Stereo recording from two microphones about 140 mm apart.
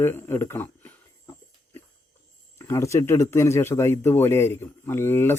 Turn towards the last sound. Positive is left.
turn(degrees=15)  # may be behind; listen again after turning